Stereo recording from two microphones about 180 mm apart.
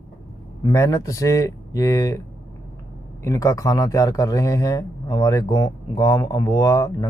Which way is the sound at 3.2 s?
20° left (ahead or behind).